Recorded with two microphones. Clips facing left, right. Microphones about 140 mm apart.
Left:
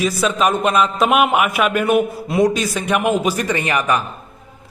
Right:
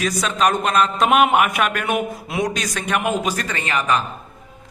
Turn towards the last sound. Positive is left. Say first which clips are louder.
# left 2 dB
turn(degrees=10)  # may be behind; listen again after turning